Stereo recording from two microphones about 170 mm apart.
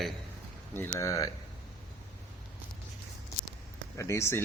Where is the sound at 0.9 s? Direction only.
20° left (ahead or behind).